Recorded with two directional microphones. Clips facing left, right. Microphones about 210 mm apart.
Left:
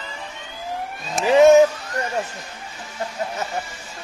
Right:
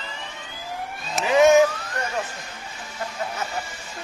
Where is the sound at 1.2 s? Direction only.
30° left (ahead or behind).